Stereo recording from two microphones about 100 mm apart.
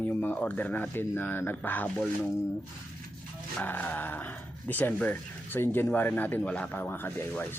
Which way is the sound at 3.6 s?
15° left (ahead or behind).